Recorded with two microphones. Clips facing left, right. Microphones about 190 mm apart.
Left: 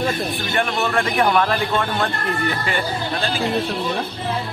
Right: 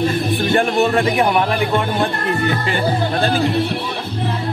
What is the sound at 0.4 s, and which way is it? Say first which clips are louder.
Music: right 6 dB; 40° right (ahead or behind).